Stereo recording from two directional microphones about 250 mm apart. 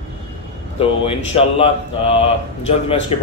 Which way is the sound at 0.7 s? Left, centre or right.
Left.